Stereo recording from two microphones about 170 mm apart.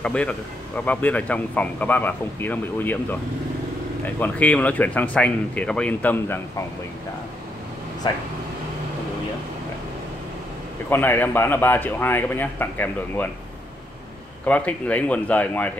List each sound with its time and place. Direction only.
0.0 s speech: 5° left (ahead or behind)
8.0 s speech: 25° left (ahead or behind)
10.9 s speech: 10° left (ahead or behind)
14.4 s speech: 10° left (ahead or behind)